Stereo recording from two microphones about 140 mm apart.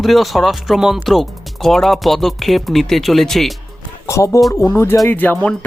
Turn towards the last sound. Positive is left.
turn(degrees=10)  # may be behind; listen again after turning